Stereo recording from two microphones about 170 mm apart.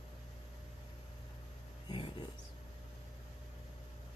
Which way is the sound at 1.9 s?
25° left (ahead or behind).